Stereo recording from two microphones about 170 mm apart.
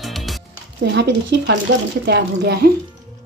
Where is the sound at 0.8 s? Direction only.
90° right.